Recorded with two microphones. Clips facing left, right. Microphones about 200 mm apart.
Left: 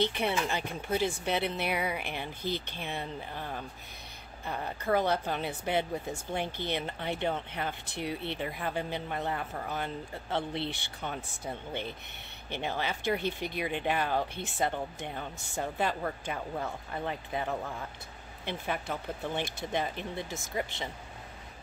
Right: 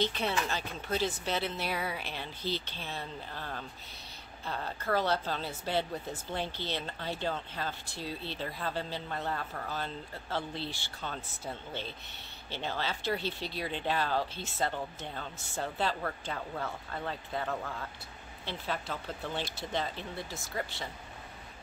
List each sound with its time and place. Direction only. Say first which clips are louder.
0.1 s speech: left 2 dB; 15° left (ahead or behind)